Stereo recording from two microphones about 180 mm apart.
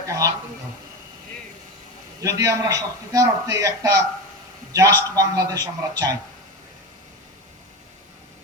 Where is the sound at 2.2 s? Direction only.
15° right (ahead or behind).